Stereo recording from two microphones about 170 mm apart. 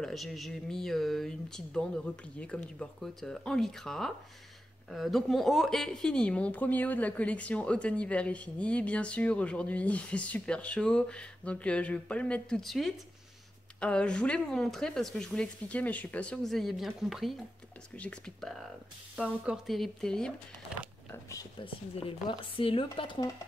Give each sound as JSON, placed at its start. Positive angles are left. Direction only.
{"t": 0.0, "sound": "speech", "side_deg": 0}
{"t": 21.1, "sound": "speech", "side_deg": 20}
{"t": 22.6, "sound": "speech", "side_deg": 30}